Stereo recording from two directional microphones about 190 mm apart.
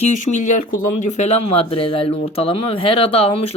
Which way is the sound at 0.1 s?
40° left (ahead or behind).